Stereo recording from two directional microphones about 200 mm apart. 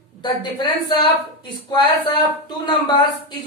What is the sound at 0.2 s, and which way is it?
Speech, 20° left (ahead or behind).